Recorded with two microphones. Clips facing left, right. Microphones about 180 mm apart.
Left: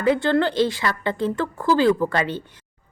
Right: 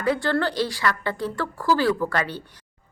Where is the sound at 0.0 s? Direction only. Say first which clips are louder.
Left 4 dB; 20° left (ahead or behind).